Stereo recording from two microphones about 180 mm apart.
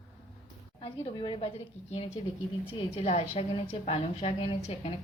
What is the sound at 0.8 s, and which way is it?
Speech, 30° left (ahead or behind).